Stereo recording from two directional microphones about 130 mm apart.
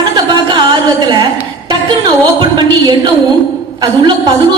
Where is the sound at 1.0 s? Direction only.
35° right (ahead or behind).